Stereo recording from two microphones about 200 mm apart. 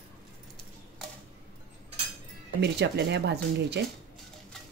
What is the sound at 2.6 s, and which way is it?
Speech, 60° right (ahead or behind).